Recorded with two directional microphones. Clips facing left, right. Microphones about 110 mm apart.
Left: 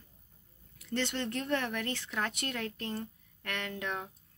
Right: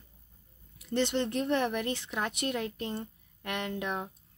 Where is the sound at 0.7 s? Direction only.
20° right (ahead or behind).